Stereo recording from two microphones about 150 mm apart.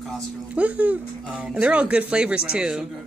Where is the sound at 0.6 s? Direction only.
10° right (ahead or behind).